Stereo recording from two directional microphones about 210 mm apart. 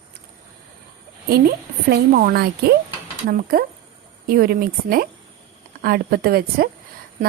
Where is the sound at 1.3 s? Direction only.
45° right (ahead or behind).